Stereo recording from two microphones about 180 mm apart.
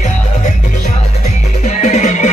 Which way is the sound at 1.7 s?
40° left (ahead or behind).